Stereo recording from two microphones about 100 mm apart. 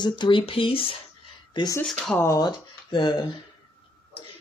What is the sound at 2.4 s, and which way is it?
Speech, 45° left (ahead or behind).